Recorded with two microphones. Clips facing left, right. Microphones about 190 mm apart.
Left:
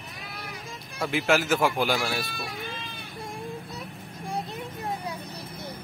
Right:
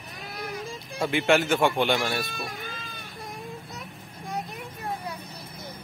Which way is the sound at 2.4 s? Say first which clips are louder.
Left 1 dB; 45° right (ahead or behind).